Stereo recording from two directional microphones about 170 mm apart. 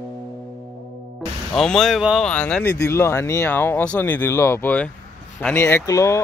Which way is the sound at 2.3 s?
10° left (ahead or behind).